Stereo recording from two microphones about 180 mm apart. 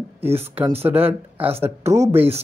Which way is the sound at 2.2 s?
35° right (ahead or behind).